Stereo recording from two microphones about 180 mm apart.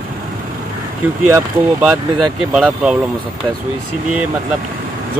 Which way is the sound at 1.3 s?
10° right (ahead or behind).